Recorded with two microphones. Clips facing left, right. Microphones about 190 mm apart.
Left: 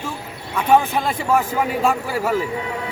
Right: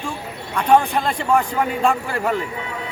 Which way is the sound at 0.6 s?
Centre (ahead or behind).